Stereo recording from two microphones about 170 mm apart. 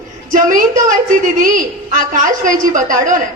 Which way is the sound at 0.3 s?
50° right (ahead or behind).